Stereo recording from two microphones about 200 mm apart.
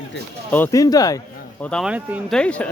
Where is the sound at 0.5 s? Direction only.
15° left (ahead or behind).